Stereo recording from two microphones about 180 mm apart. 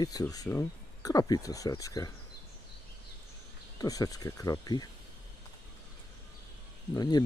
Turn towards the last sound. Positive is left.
turn(degrees=20)  # may be behind; listen again after turning